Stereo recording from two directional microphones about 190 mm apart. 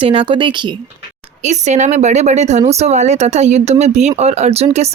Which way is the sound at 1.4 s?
35° right (ahead or behind).